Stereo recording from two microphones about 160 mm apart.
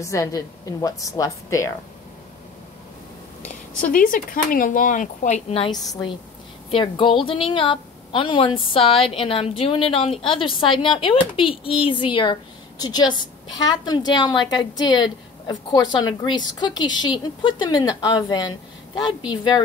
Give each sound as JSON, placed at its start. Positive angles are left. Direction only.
{"t": 0.0, "sound": "a woman's voice", "side_deg": 20}
{"t": 3.8, "sound": "speech", "side_deg": 60}
{"t": 6.7, "sound": "a woman's voice", "side_deg": 30}